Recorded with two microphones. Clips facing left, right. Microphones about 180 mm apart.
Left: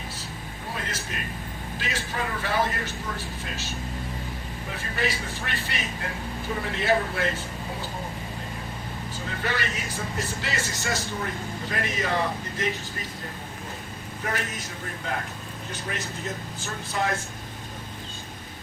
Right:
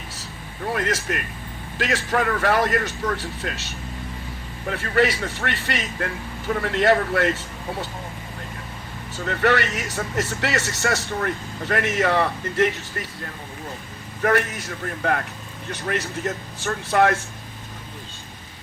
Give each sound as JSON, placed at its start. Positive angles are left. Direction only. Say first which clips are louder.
{"t": 0.7, "sound": "speech", "louder": "right 10 dB", "side_deg": -80}
{"t": 4.7, "sound": "speech", "louder": "right 9 dB", "side_deg": -70}
{"t": 9.1, "sound": "speech", "louder": "right 10 dB", "side_deg": -70}
{"t": 14.2, "sound": "speech", "louder": "right 10 dB", "side_deg": -65}